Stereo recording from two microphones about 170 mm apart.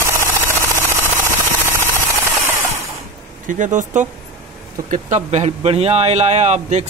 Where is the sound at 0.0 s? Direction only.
15° right (ahead or behind).